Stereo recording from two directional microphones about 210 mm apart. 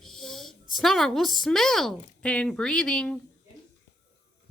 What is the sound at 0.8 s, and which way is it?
A woman's voice, centre (ahead or behind).